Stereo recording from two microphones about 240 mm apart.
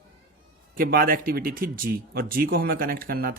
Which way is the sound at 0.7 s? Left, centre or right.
Right.